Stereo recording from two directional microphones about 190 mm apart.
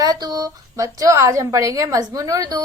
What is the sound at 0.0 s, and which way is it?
A woman's voice, 20° right (ahead or behind).